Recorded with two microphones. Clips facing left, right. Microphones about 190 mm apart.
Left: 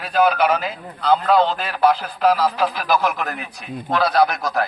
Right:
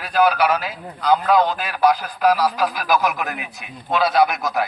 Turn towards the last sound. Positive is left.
turn(degrees=0)  # may be behind; listen again after turning